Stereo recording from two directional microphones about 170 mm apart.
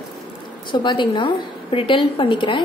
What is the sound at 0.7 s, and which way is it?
A woman's voice, 25° left (ahead or behind).